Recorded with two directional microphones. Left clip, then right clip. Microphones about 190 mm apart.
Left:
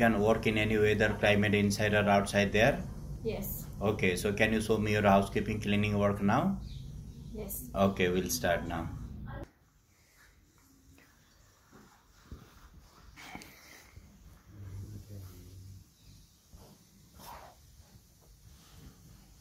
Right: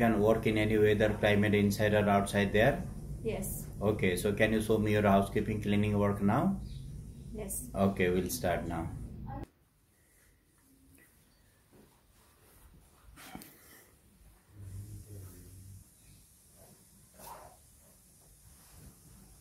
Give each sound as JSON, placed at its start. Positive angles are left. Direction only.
{"t": 0.0, "sound": "speech", "side_deg": -10}
{"t": 3.8, "sound": "speech", "side_deg": -10}